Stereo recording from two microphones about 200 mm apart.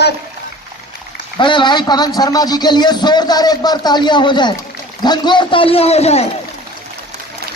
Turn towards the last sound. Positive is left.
turn(degrees=30)  # may be behind; listen again after turning